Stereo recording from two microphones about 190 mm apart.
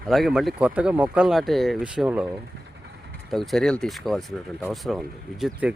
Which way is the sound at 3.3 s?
Centre (ahead or behind).